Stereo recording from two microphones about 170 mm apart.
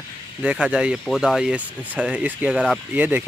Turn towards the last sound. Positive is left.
turn(degrees=-10)  # may be behind; listen again after turning